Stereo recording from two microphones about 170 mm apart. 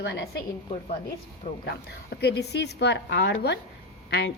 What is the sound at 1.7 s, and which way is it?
A woman's voice, 70° left (ahead or behind).